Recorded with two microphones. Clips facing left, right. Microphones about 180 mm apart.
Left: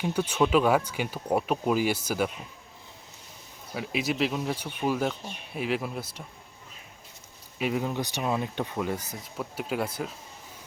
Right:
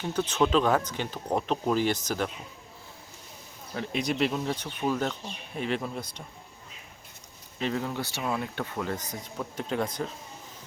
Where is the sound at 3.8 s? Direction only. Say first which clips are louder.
Even; 5° left (ahead or behind).